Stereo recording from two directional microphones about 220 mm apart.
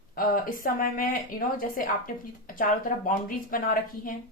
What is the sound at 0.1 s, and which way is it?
Speech, 40° left (ahead or behind).